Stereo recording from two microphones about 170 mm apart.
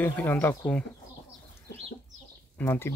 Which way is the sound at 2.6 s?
15° left (ahead or behind).